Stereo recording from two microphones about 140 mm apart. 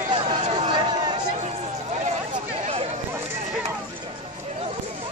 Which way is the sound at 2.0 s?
50° right (ahead or behind).